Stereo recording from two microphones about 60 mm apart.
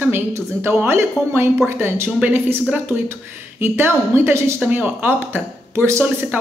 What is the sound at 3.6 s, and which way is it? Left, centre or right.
Speech, right.